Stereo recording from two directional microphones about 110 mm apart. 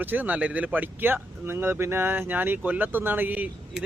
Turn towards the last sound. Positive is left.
turn(degrees=-15)  # may be behind; listen again after turning